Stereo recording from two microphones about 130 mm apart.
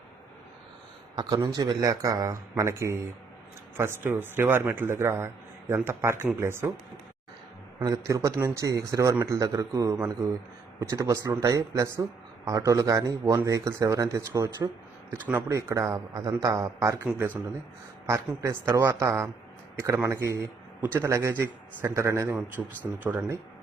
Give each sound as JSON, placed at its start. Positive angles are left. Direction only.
{"t": 1.1, "sound": "a man's voice", "side_deg": -30}
{"t": 7.8, "sound": "a man's voice", "side_deg": -25}
{"t": 22.6, "sound": "a man's voice", "side_deg": -5}